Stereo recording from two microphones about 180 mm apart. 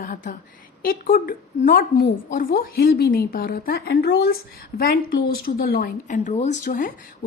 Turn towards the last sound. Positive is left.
turn(degrees=50)  # may be behind; listen again after turning